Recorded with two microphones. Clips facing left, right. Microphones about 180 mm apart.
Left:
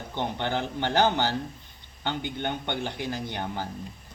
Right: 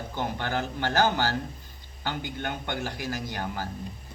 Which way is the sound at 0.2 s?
20° left (ahead or behind).